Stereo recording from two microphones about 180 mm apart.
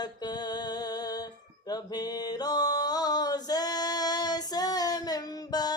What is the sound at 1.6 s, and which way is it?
Mantra, 20° left (ahead or behind).